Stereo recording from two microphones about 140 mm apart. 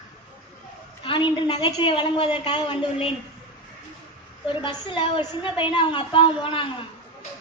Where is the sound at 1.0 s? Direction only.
35° left (ahead or behind).